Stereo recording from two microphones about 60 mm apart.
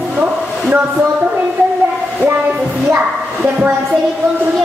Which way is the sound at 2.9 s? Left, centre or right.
Right.